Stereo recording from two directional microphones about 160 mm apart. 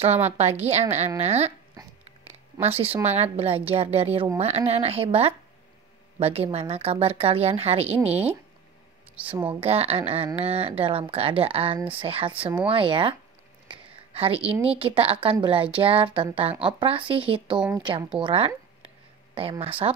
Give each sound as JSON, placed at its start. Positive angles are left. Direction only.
{"t": 0.4, "sound": "a woman's voice", "side_deg": -40}
{"t": 1.8, "sound": "dog", "side_deg": -25}
{"t": 2.6, "sound": "speech", "side_deg": -35}
{"t": 9.5, "sound": "a woman's voice", "side_deg": -40}
{"t": 19.6, "sound": "speech", "side_deg": -35}